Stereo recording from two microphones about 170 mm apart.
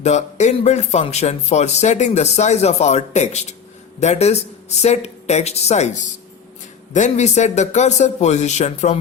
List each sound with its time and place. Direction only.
0.0 s a man's voice: 45° left (ahead or behind)